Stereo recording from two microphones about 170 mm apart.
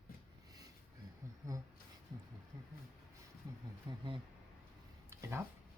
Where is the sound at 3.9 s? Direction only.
25° right (ahead or behind).